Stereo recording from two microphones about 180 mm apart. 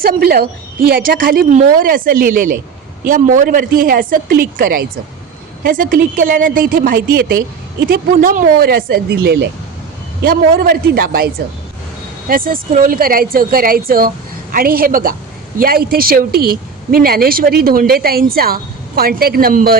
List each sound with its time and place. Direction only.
0.0 s a woman's voice: 55° right (ahead or behind)
10.2 s a woman's voice: 55° right (ahead or behind)
12.3 s a woman's voice: 50° right (ahead or behind)